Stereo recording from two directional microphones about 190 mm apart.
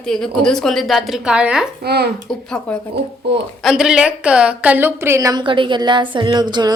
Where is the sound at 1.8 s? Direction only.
55° right (ahead or behind).